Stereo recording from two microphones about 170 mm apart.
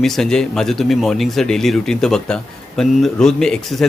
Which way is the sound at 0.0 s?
5° left (ahead or behind).